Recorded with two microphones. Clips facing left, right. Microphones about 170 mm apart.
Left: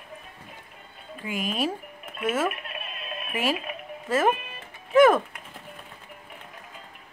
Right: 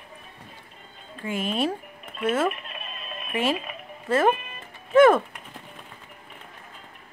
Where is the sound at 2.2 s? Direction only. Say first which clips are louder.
Right 2 dB; centre (ahead or behind).